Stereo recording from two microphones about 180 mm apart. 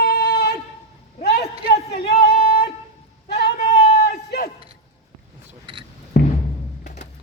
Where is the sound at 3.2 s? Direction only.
65° left (ahead or behind).